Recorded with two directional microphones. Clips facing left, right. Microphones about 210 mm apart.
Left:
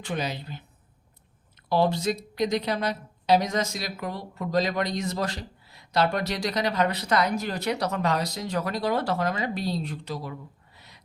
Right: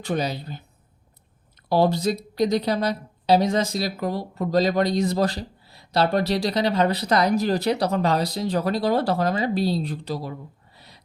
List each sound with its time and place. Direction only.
0.0 s a woman's voice: 40° right (ahead or behind)
1.7 s a woman's voice: 35° right (ahead or behind)
10.8 s a sound: 35° right (ahead or behind)